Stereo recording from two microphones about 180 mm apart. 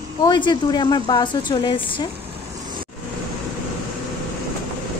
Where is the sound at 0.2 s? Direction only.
25° left (ahead or behind).